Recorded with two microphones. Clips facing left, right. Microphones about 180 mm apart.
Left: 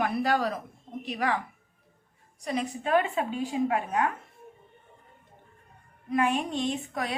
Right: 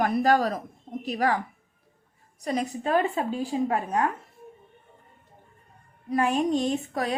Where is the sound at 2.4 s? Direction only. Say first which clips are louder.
Right 3 dB; 40° right (ahead or behind).